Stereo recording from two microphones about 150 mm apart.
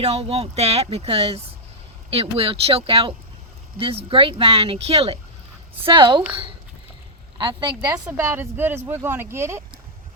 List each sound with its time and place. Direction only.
0.0 s speech: 45° right (ahead or behind)
7.3 s speech: 30° right (ahead or behind)
8.1 s speech: 15° right (ahead or behind)